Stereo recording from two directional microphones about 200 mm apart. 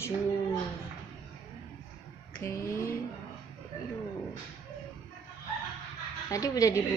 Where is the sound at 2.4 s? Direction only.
15° left (ahead or behind).